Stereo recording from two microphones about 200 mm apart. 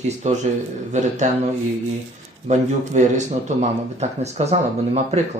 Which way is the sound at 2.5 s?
35° right (ahead or behind).